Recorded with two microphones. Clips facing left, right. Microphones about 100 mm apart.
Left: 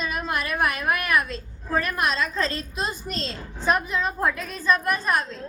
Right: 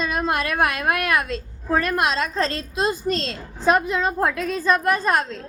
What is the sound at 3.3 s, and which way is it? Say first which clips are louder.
A woman's voice: right 2 dB; 90° right.